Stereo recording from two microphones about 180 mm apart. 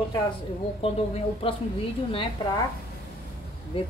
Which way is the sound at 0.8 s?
30° left (ahead or behind).